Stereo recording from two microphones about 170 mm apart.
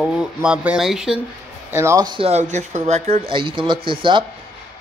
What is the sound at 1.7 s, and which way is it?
Speech, 20° right (ahead or behind).